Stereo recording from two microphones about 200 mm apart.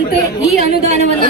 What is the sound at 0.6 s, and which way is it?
Speech, 35° right (ahead or behind).